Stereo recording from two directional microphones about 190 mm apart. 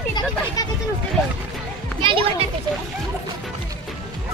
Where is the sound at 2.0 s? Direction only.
25° right (ahead or behind).